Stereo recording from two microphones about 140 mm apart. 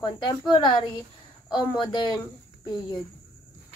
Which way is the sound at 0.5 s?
35° left (ahead or behind).